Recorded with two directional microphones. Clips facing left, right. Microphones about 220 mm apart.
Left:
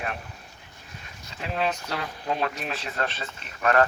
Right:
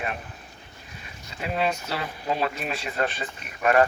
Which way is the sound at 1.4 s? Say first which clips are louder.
Right 2 dB; 5° right (ahead or behind).